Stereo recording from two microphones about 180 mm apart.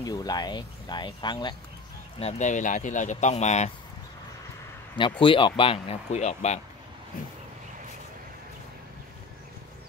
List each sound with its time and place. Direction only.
0.0 s speech: 20° left (ahead or behind)
2.1 s speech: 35° left (ahead or behind)
4.9 s speech: 25° left (ahead or behind)